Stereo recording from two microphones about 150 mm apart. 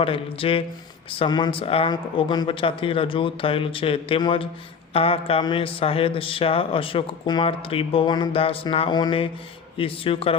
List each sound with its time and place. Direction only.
0.0 s speech: 35° left (ahead or behind)